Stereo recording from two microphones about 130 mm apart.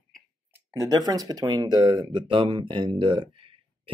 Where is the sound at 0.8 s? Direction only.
30° right (ahead or behind).